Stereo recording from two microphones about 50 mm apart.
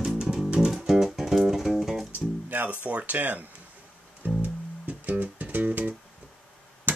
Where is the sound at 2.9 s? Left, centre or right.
Right.